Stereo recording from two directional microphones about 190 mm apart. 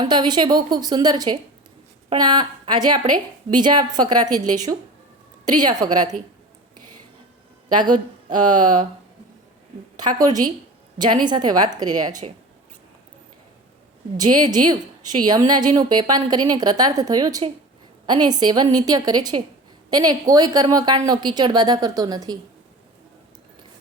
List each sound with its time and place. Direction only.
0.0 s a woman's voice: 25° right (ahead or behind)
10.0 s a woman's voice: 20° right (ahead or behind)
14.2 s a woman's voice: 20° right (ahead or behind)